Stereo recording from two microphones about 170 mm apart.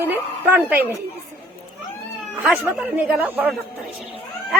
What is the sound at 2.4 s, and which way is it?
Speech, 5° right (ahead or behind).